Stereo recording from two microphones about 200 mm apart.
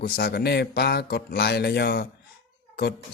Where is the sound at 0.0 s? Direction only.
50° left (ahead or behind).